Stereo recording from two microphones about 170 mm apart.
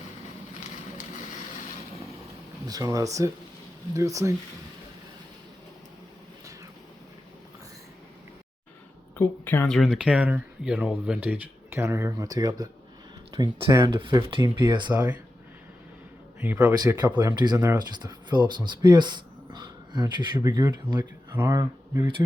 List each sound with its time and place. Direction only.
0.6 s a sound: 45° left (ahead or behind)
2.6 s speech: 20° right (ahead or behind)
9.1 s speech: 10° left (ahead or behind)
9.7 s speech: centre (ahead or behind); by 14.9 s 25° right (ahead or behind)
16.4 s speech: 10° right (ahead or behind)
16.7 s speech: 20° right (ahead or behind)